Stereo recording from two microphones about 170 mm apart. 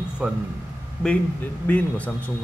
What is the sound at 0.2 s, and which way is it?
Speech, 5° right (ahead or behind).